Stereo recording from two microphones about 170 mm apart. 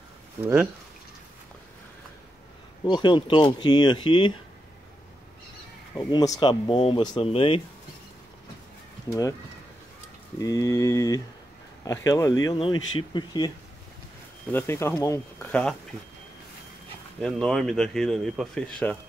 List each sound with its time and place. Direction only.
0.4 s speech: 15° right (ahead or behind)
2.8 s speech: 25° left (ahead or behind)
5.9 s speech: 20° left (ahead or behind)
10.4 s speech: 20° left (ahead or behind)
14.5 s speech: 15° left (ahead or behind)
17.2 s speech: 5° left (ahead or behind)